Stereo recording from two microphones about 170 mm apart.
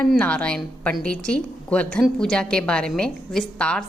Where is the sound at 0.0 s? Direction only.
10° left (ahead or behind).